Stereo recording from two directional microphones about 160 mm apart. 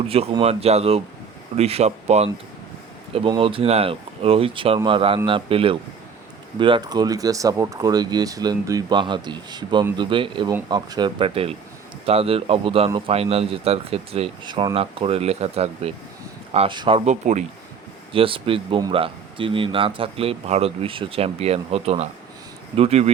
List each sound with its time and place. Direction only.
0.1 s speech: 35° right (ahead or behind)
3.2 s speech: 30° right (ahead or behind)
17.1 s speech: 50° right (ahead or behind)
18.1 s speech: 35° right (ahead or behind)